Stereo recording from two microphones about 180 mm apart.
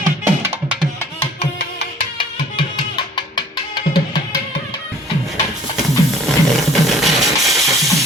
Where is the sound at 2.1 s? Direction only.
25° left (ahead or behind).